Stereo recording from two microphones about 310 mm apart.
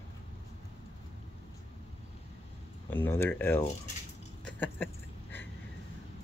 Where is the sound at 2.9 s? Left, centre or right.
Centre.